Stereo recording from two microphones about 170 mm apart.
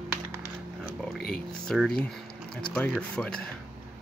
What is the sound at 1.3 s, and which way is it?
Speech, 5° left (ahead or behind).